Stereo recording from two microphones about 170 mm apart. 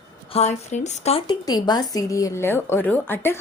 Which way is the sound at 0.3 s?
40° left (ahead or behind).